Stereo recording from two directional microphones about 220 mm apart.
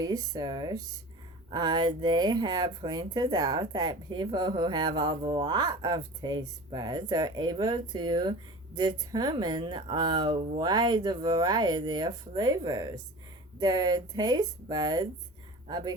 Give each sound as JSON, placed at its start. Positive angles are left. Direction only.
{"t": 0.0, "sound": "speech", "side_deg": -20}